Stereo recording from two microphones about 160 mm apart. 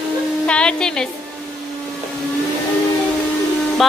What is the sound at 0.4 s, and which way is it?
Speech, 5° left (ahead or behind).